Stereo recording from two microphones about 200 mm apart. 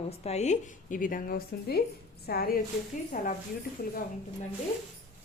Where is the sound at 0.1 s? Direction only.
30° left (ahead or behind).